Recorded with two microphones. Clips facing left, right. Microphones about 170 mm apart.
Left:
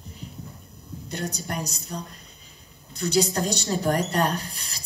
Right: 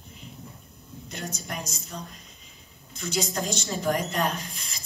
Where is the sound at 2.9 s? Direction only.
35° left (ahead or behind).